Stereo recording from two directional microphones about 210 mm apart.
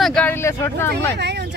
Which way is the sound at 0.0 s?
5° left (ahead or behind).